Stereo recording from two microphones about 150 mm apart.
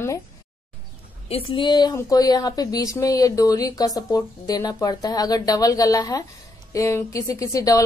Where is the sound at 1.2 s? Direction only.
40° left (ahead or behind).